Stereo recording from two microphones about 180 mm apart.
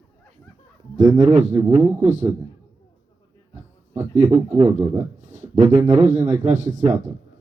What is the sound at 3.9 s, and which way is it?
Speech, 15° right (ahead or behind).